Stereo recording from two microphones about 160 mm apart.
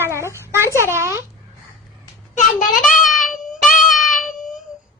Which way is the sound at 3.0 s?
55° left (ahead or behind).